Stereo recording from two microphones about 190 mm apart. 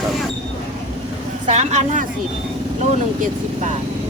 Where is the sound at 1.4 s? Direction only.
35° right (ahead or behind).